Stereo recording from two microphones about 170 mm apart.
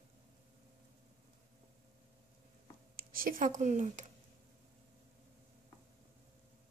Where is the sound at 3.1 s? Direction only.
55° right (ahead or behind).